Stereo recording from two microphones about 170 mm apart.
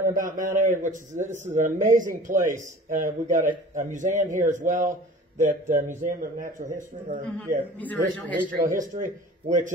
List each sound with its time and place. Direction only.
0.1 s a man's voice: 50° right (ahead or behind)
7.3 s a man's voice: 10° left (ahead or behind)
8.7 s a man's voice: 50° right (ahead or behind)